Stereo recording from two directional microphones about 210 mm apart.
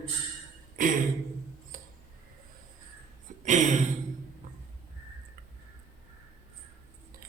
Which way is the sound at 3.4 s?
35° right (ahead or behind).